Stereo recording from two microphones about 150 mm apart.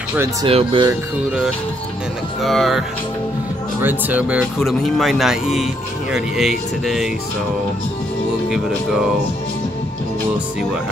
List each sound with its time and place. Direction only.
0.1 s speech: 15° right (ahead or behind)
0.5 s speech: 40° right (ahead or behind)
2.4 s speech: centre (ahead or behind)
3.8 s speech: 10° right (ahead or behind)
8.5 s speech: 5° right (ahead or behind)